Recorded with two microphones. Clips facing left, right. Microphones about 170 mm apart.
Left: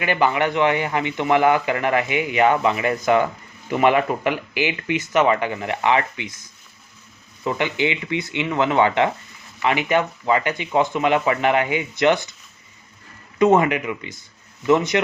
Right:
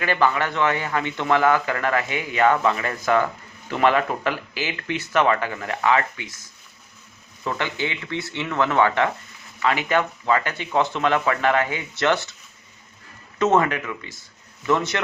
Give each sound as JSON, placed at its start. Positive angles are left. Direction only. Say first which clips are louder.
{"t": 0.0, "sound": "a man's voice", "louder": "left 2 dB", "side_deg": 15}
{"t": 7.4, "sound": "a man's voice", "louder": "left 5 dB", "side_deg": 15}
{"t": 13.4, "sound": "a man's voice", "louder": "left 3 dB", "side_deg": 15}